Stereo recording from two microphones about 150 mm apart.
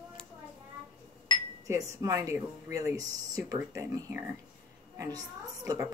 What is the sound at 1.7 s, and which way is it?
A woman's voice, 20° right (ahead or behind).